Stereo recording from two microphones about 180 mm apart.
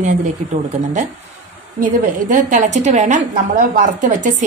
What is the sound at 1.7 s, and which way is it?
A woman's voice, 45° right (ahead or behind).